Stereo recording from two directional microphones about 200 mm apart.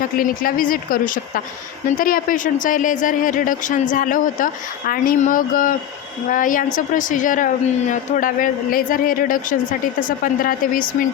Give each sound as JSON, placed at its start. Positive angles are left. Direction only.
{"t": 0.2, "sound": "speech", "side_deg": 45}